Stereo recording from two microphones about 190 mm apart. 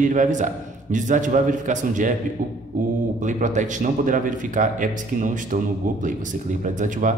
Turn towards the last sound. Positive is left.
turn(degrees=-40)  # may be behind; listen again after turning